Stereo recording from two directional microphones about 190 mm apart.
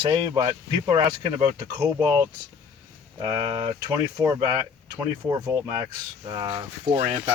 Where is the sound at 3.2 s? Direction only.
25° right (ahead or behind).